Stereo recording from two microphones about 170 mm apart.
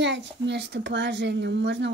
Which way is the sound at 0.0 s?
90° right.